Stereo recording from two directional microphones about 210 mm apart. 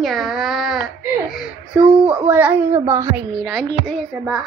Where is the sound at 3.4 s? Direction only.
Centre (ahead or behind).